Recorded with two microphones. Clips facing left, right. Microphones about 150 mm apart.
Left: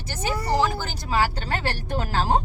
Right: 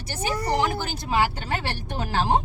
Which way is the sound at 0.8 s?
15° right (ahead or behind).